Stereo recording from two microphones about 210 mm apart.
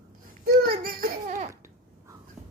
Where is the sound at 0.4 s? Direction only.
45° right (ahead or behind).